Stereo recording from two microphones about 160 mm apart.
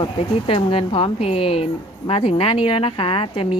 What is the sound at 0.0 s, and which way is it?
Speech, 35° left (ahead or behind).